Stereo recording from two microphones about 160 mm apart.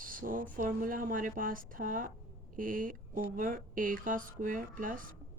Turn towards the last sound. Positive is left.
turn(degrees=-60)  # may be behind; listen again after turning